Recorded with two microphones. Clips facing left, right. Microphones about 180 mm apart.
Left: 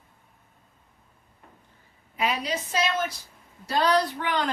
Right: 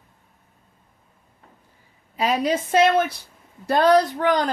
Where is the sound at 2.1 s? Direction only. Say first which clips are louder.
Right 7 dB; 40° right (ahead or behind).